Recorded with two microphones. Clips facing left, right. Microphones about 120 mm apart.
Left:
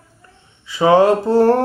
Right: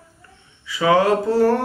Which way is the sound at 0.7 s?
30° left (ahead or behind).